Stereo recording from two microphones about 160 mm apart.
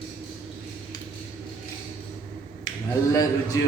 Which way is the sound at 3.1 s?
20° left (ahead or behind).